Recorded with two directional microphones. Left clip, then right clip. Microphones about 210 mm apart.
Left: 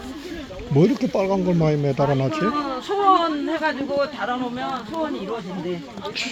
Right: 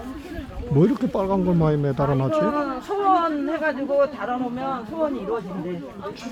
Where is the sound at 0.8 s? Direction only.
Centre (ahead or behind).